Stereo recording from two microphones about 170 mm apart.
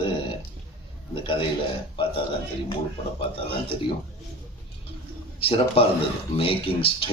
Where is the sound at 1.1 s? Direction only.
30° left (ahead or behind).